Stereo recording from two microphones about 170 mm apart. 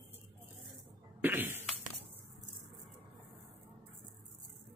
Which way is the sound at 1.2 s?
10° right (ahead or behind).